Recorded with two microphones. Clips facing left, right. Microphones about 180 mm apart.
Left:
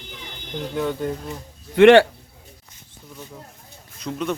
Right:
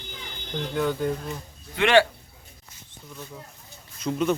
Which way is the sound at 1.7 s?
60° left (ahead or behind).